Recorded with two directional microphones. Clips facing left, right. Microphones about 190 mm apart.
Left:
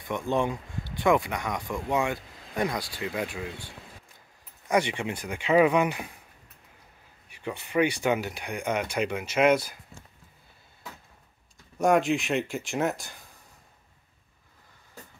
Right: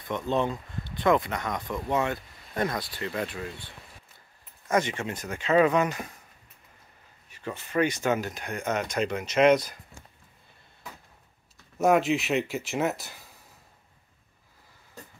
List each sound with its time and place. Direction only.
0.0 s speech: 10° left (ahead or behind)
7.2 s speech: 15° left (ahead or behind)
11.8 s speech: centre (ahead or behind)